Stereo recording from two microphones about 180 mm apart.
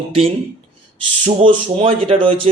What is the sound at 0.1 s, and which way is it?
Speech, 30° right (ahead or behind).